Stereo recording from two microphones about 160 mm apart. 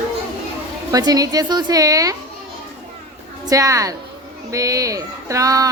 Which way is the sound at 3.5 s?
20° right (ahead or behind).